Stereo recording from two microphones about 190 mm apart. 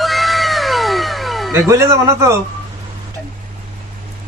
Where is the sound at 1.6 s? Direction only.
15° right (ahead or behind).